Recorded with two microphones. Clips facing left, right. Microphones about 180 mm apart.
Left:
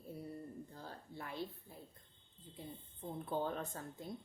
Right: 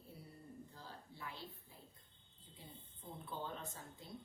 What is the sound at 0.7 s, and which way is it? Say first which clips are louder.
A woman's voice: left 5 dB; 55° left (ahead or behind).